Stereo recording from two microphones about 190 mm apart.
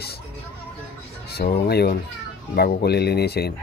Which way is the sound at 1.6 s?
55° left (ahead or behind).